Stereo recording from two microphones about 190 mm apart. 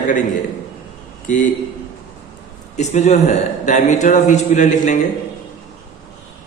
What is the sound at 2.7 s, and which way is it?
A man's voice, 40° left (ahead or behind).